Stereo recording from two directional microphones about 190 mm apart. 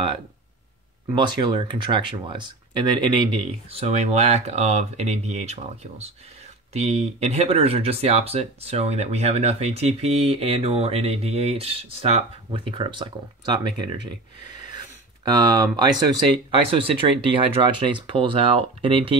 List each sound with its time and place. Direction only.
1.1 s speech: 25° right (ahead or behind)
15.2 s speech: 20° right (ahead or behind)